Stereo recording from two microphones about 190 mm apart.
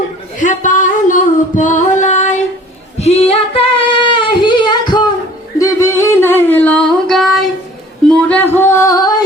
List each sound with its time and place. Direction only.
0.3 s singing: 40° left (ahead or behind)
3.0 s female singing: 35° left (ahead or behind)
5.5 s music: 15° left (ahead or behind)